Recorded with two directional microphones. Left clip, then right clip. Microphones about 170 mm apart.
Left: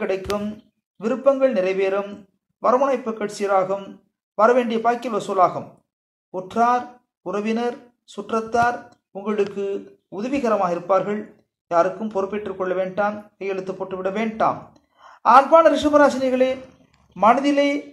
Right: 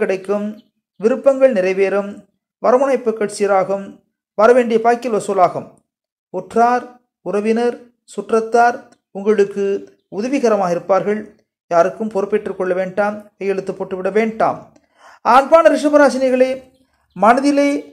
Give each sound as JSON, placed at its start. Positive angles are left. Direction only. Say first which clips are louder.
{"t": 0.0, "sound": "speech", "louder": "right 6 dB", "side_deg": -30}